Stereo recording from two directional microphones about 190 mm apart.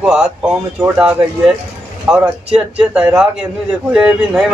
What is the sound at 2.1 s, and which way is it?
A man's voice, 5° right (ahead or behind).